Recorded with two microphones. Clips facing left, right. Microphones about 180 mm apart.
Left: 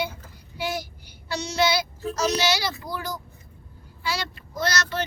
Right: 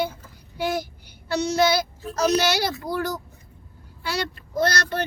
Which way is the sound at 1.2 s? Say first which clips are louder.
Right 4 dB; 55° right (ahead or behind).